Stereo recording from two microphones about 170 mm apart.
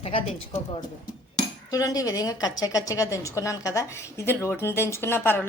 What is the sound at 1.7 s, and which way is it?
A woman's voice, 20° left (ahead or behind).